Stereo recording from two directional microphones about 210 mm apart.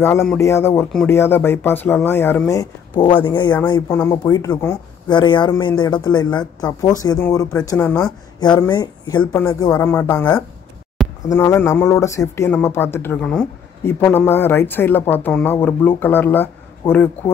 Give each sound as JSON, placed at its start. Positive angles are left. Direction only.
{"t": 0.4, "sound": "speech", "side_deg": 10}
{"t": 7.7, "sound": "speech", "side_deg": 5}
{"t": 8.5, "sound": "speech", "side_deg": 20}